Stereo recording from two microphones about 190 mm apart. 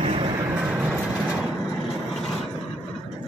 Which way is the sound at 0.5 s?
5° right (ahead or behind).